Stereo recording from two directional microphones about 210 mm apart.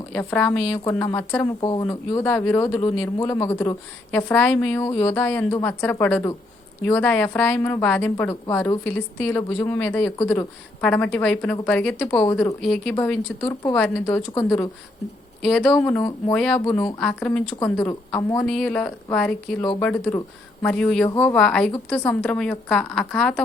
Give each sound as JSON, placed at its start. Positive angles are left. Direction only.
{"t": 0.1, "sound": "a woman's voice", "side_deg": 5}
{"t": 1.6, "sound": "speech", "side_deg": 20}
{"t": 1.9, "sound": "a woman's voice", "side_deg": 10}
{"t": 13.4, "sound": "speech", "side_deg": 20}
{"t": 13.7, "sound": "a woman's voice", "side_deg": 5}
{"t": 14.3, "sound": "a woman's voice", "side_deg": 15}
{"t": 15.4, "sound": "a woman's voice", "side_deg": 0}